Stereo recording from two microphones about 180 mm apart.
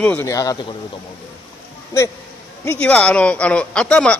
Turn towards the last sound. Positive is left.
turn(degrees=5)  # may be behind; listen again after turning